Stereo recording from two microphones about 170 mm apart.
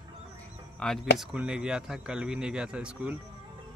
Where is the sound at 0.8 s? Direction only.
5° left (ahead or behind).